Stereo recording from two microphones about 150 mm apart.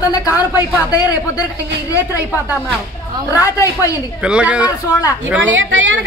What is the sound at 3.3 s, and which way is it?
Speech, 20° left (ahead or behind).